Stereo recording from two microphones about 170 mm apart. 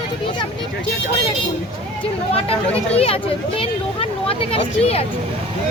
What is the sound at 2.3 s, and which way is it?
Speech, 35° left (ahead or behind).